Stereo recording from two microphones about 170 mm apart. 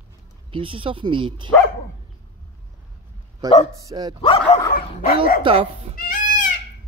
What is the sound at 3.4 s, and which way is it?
Speech, 25° right (ahead or behind).